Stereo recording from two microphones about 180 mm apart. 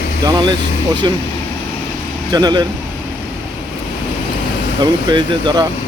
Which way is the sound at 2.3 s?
25° right (ahead or behind).